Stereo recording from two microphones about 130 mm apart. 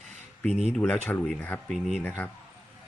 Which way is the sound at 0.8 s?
10° left (ahead or behind).